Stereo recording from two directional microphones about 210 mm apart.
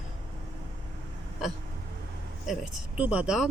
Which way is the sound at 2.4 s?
5° right (ahead or behind).